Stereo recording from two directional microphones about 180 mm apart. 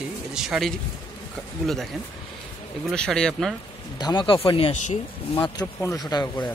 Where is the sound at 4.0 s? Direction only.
25° left (ahead or behind).